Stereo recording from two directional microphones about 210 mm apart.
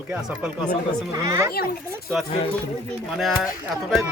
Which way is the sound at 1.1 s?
15° right (ahead or behind).